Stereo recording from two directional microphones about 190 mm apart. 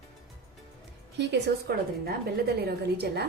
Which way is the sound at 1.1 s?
65° right (ahead or behind).